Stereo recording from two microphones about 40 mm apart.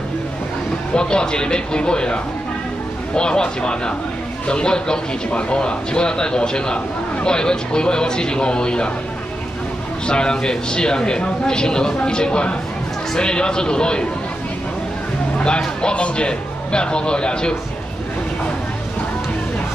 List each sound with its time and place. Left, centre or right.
0.9 s a man's voice: left
3.2 s a man's voice: left
10.0 s a man's voice: left
15.3 s music: left
15.8 s a man's voice: left